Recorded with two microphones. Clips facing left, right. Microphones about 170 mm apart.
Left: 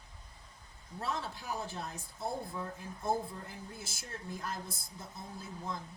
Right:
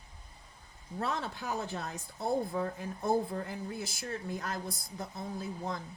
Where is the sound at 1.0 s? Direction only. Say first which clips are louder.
Right 3 dB; 70° right (ahead or behind).